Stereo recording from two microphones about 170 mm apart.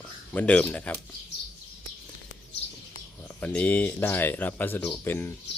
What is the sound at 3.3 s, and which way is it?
Speech, 10° left (ahead or behind).